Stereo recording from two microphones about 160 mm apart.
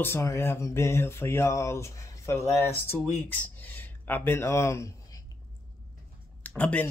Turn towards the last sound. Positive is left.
turn(degrees=10)  # may be behind; listen again after turning